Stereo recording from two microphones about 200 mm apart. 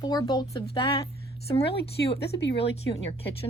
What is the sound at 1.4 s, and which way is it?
Speech, 30° left (ahead or behind).